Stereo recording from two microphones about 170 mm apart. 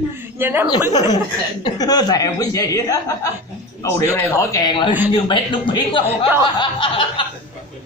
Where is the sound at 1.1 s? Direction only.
20° left (ahead or behind).